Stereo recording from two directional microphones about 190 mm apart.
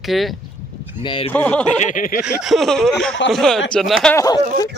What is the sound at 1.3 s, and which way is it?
Speech, 10° left (ahead or behind).